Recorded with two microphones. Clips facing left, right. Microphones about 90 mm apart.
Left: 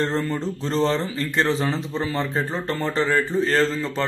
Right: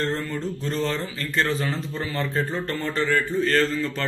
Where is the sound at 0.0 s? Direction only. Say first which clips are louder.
Left 3 dB; 25° left (ahead or behind).